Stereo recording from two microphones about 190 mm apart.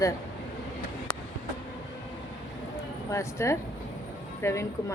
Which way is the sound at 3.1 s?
15° left (ahead or behind).